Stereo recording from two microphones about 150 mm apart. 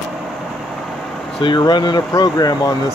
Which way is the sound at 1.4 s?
30° left (ahead or behind).